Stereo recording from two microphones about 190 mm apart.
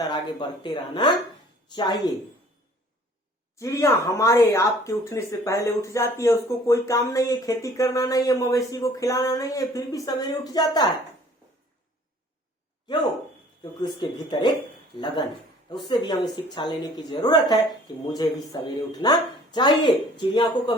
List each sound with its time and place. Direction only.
0.1 s speech: 25° left (ahead or behind)
3.6 s speech: 15° left (ahead or behind)
13.8 s speech: 20° left (ahead or behind)